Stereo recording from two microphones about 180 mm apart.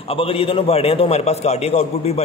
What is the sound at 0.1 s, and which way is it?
A man's voice, 30° left (ahead or behind).